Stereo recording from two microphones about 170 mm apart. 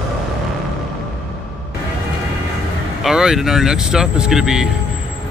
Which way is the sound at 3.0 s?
Centre (ahead or behind).